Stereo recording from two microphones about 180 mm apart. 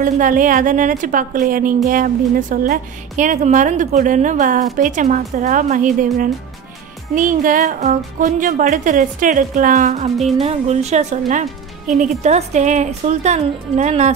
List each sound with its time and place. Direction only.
0.0 s speech: 45° right (ahead or behind)
10.1 s music: centre (ahead or behind)
10.4 s a woman's voice: 35° right (ahead or behind)